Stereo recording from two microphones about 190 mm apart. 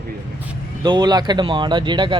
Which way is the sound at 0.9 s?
20° right (ahead or behind).